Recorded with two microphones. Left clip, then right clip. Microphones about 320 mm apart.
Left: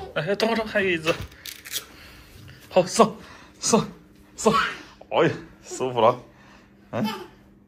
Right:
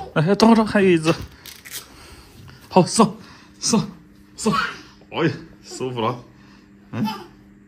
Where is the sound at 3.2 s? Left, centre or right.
Centre.